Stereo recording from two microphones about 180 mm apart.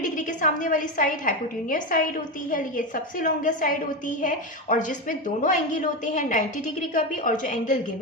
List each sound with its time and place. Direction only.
0.0 s a woman's voice: 45° left (ahead or behind)